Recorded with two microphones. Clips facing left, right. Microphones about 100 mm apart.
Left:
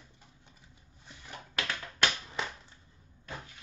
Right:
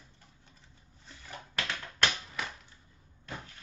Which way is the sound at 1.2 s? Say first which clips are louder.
Even; 15° left (ahead or behind).